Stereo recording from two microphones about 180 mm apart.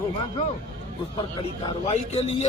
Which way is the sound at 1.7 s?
35° left (ahead or behind).